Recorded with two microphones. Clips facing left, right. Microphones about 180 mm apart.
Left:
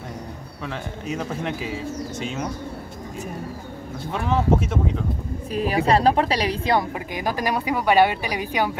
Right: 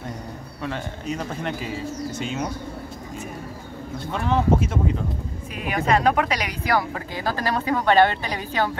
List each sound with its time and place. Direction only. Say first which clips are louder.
0.7 s speech: right 1 dB; centre (ahead or behind)
4.1 s speech: even; centre (ahead or behind)
5.5 s speech: left 3 dB; 35° left (ahead or behind); by 8.7 s 10° left (ahead or behind)